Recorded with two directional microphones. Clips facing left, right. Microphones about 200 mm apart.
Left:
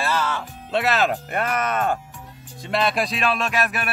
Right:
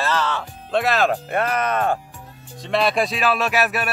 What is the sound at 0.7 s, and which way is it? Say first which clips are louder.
Speech: right 2 dB; 50° right (ahead or behind).